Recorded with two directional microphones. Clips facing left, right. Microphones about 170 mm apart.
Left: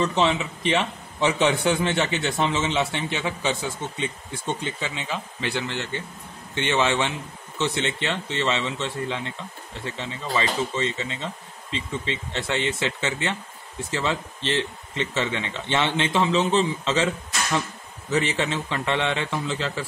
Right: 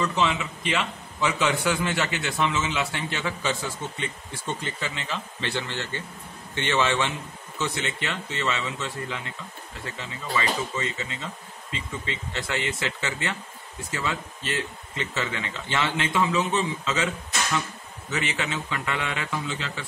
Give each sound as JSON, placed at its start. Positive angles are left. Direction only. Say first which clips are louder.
{"t": 0.0, "sound": "a man's voice", "louder": "left 3 dB", "side_deg": 25}
{"t": 18.1, "sound": "a man's voice", "louder": "left 5 dB", "side_deg": 30}